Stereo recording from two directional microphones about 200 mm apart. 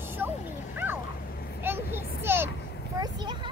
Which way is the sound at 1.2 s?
50° left (ahead or behind).